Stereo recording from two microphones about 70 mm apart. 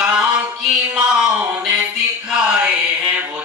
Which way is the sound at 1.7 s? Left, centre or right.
Centre.